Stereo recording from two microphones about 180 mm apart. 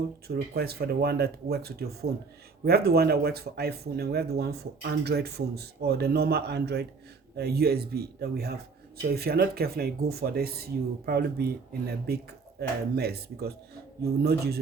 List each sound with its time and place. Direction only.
0.3 s speech: 60° right (ahead or behind)